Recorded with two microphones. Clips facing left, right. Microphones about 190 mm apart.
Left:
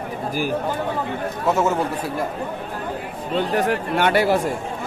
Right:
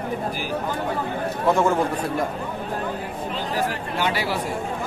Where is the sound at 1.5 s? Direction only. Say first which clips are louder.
Even; 5° left (ahead or behind).